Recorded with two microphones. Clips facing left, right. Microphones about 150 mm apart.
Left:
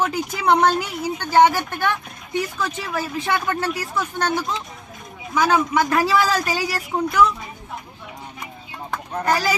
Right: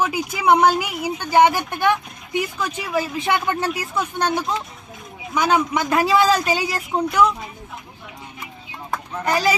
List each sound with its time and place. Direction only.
0.0 s a man's voice: 10° right (ahead or behind)
9.3 s a man's voice: 20° right (ahead or behind)